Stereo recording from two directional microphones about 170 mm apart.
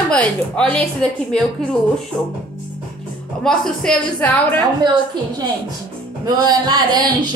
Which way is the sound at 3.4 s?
5° left (ahead or behind).